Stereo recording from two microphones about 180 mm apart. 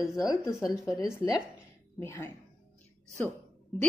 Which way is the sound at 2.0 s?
15° left (ahead or behind).